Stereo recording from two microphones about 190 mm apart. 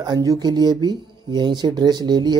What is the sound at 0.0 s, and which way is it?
Speech, 20° right (ahead or behind).